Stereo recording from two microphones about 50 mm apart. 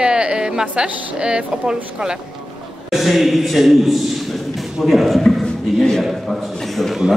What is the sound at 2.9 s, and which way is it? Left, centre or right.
A man's voice, centre.